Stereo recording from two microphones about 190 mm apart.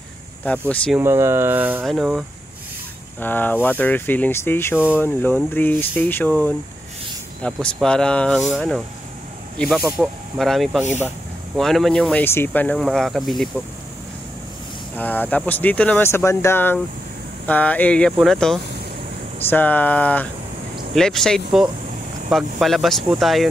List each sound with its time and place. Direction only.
0.5 s speech: 5° left (ahead or behind)
0.9 s speech: 15° right (ahead or behind)
3.2 s speech: 10° left (ahead or behind)
15.0 s speech: 10° left (ahead or behind)